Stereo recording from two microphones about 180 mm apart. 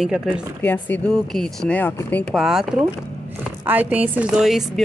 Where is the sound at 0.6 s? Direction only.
10° left (ahead or behind).